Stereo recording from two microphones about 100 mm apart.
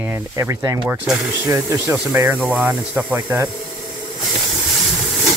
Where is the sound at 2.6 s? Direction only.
15° right (ahead or behind).